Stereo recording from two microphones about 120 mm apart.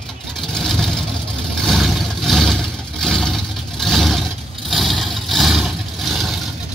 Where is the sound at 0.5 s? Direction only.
Centre (ahead or behind).